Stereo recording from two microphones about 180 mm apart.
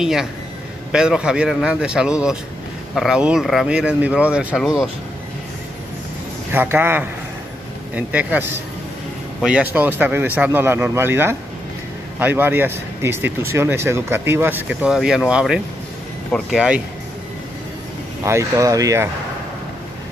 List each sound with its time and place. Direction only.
0.0 s speech: 5° right (ahead or behind)
6.5 s speech: 10° right (ahead or behind)
16.3 s speech: 5° left (ahead or behind)
16.5 s speech: 5° right (ahead or behind)
18.2 s speech: 15° right (ahead or behind)